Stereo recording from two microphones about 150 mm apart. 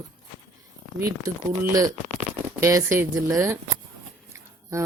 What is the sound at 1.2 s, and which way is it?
Speech, 25° right (ahead or behind).